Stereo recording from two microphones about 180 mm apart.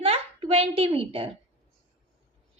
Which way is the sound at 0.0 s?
35° right (ahead or behind).